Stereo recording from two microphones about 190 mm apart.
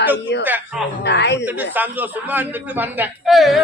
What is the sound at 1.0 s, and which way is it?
Speech, 65° left (ahead or behind).